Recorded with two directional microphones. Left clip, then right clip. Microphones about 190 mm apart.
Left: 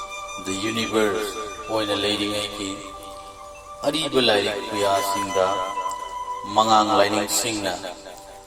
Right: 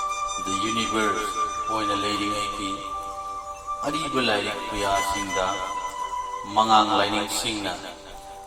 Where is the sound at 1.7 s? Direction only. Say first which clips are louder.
Left 6 dB; 50° left (ahead or behind).